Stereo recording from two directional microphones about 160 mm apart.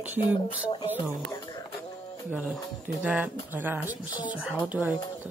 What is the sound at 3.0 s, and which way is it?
Speech, 5° right (ahead or behind).